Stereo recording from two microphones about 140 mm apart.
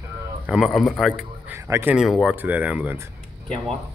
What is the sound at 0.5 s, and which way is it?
Speech, centre (ahead or behind).